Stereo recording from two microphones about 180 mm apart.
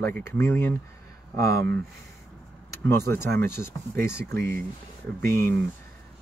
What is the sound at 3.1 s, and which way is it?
Speech, 15° left (ahead or behind).